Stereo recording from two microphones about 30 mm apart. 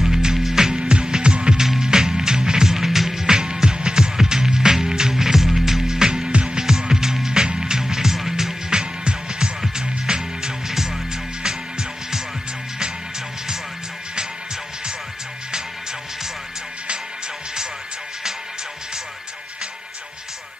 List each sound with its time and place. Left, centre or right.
0.0 s music: centre
1.6 s music: right
3.3 s music: right
8.7 s music: right
10.7 s music: centre